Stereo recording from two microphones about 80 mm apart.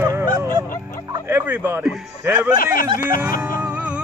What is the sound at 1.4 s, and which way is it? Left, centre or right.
Speech, right.